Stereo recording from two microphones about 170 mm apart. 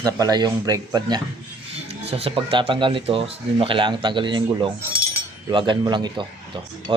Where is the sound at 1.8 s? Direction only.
35° right (ahead or behind).